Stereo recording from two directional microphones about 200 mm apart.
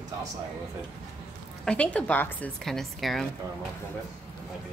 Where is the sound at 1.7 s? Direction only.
5° left (ahead or behind).